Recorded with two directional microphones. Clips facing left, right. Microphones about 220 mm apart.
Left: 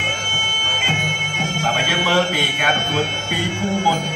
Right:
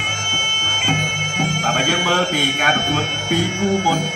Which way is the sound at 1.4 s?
45° right (ahead or behind).